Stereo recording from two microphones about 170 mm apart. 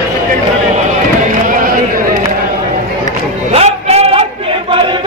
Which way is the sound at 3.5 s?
35° right (ahead or behind).